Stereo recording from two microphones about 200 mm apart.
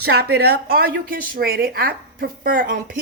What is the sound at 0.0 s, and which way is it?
Speech, 55° right (ahead or behind).